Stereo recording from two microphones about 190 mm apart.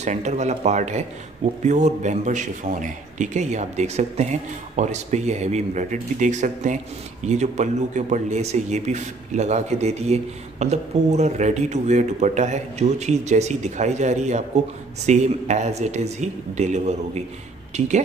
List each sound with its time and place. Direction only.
0.0 s speech: 35° right (ahead or behind)